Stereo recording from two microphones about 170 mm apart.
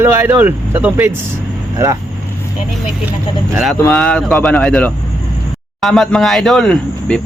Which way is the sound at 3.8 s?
5° left (ahead or behind).